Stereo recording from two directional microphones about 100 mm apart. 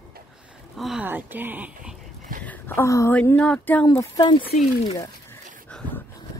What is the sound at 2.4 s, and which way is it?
Speech, 20° left (ahead or behind).